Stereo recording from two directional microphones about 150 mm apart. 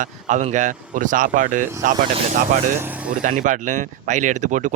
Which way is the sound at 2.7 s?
10° right (ahead or behind).